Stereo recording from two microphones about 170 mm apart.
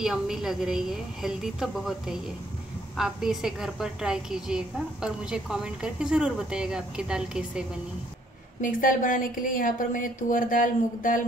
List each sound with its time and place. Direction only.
0.0 s a woman's voice: 5° right (ahead or behind)
8.5 s a woman's voice: 50° left (ahead or behind)